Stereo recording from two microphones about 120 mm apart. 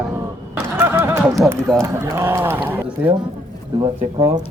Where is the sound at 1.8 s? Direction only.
20° right (ahead or behind).